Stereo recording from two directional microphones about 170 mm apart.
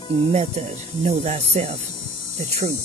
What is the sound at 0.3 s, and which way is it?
Speech, 40° right (ahead or behind).